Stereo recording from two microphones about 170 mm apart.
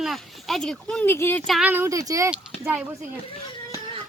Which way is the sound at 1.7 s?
15° right (ahead or behind).